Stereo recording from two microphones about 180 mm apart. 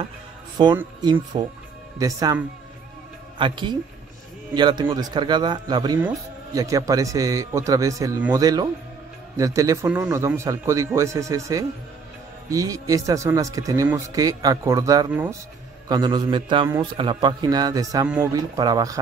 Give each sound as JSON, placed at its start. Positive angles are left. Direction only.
{"t": 0.6, "sound": "a man's voice", "side_deg": -25}
{"t": 3.3, "sound": "a man's voice", "side_deg": -25}
{"t": 15.9, "sound": "a man's voice", "side_deg": -25}